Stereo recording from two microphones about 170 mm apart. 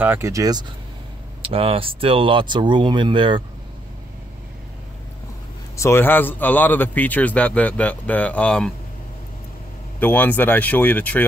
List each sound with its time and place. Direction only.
0.0 s speech: 15° right (ahead or behind)
1.4 s speech: 35° right (ahead or behind)
5.8 s a man's voice: 15° left (ahead or behind)
9.9 s a man's voice: 10° left (ahead or behind)